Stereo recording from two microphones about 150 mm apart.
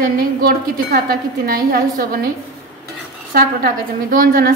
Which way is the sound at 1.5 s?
70° right (ahead or behind).